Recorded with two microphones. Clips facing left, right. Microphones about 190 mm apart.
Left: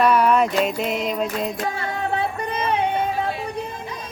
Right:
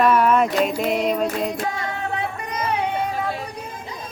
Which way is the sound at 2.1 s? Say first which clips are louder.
Left 3 dB; 30° left (ahead or behind).